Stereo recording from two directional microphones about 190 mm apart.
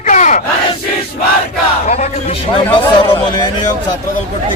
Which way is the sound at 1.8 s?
35° left (ahead or behind).